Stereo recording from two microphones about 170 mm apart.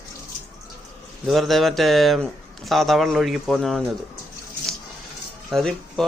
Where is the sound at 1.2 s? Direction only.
Centre (ahead or behind).